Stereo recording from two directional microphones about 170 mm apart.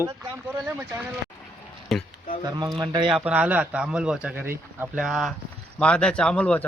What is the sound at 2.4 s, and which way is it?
Speech, 25° right (ahead or behind).